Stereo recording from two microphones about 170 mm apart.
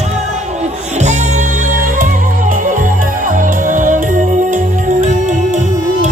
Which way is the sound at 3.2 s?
50° right (ahead or behind).